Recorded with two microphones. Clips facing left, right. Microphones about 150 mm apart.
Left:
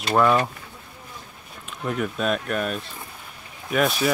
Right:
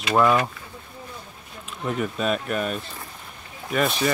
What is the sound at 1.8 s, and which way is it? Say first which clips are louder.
Speech: even; centre (ahead or behind).